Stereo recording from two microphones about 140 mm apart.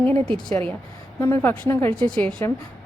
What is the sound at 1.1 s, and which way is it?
Speech, 15° left (ahead or behind).